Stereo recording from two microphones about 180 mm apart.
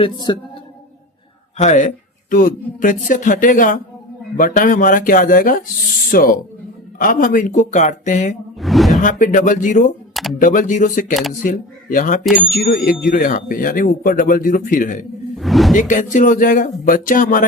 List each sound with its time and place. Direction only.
0.0 s a man's voice: 25° left (ahead or behind)
1.5 s speech: 40° left (ahead or behind)
8.5 s a sound: centre (ahead or behind)
9.0 s speech: 45° left (ahead or behind)
11.1 s speech: centre (ahead or behind)
11.4 s speech: 45° left (ahead or behind)
12.2 s speech: centre (ahead or behind)
12.5 s speech: 55° left (ahead or behind)
15.4 s whoosh: centre (ahead or behind)
15.7 s speech: 45° left (ahead or behind)